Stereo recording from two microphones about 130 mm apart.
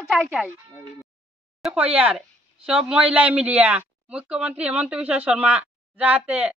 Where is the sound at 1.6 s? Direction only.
10° right (ahead or behind).